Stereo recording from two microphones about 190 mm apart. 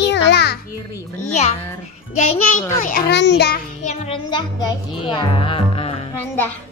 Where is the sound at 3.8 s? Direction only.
30° left (ahead or behind).